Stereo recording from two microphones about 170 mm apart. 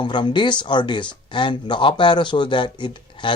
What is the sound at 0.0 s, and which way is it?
Speech, 25° left (ahead or behind).